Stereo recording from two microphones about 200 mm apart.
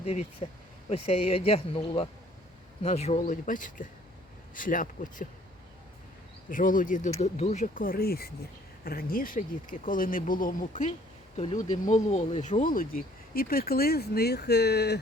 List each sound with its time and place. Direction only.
0.0 s speech: 35° left (ahead or behind)
6.5 s speech: 40° left (ahead or behind)